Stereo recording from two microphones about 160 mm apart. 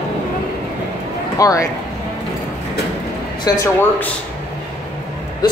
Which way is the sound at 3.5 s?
25° left (ahead or behind).